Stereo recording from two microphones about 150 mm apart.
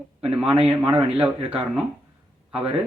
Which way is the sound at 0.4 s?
40° right (ahead or behind).